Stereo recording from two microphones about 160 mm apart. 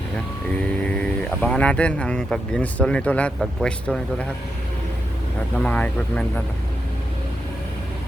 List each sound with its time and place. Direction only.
0.9 s speech: 10° left (ahead or behind)
5.5 s speech: 10° left (ahead or behind)